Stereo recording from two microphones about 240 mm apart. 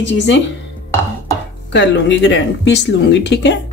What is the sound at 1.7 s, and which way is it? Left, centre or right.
Speech, left.